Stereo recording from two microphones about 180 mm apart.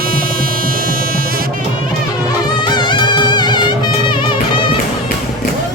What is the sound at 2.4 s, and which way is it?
Music, 25° left (ahead or behind).